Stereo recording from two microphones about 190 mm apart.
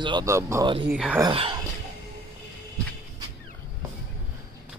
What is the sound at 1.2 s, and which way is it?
Speech, 25° right (ahead or behind).